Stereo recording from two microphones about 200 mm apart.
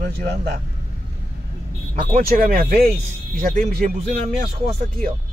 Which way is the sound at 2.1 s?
45° right (ahead or behind).